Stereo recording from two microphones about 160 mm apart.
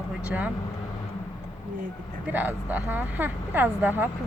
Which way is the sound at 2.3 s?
10° right (ahead or behind).